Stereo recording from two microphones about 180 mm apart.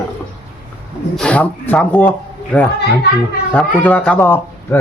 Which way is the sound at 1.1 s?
5° left (ahead or behind).